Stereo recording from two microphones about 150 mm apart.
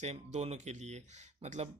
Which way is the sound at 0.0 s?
45° right (ahead or behind).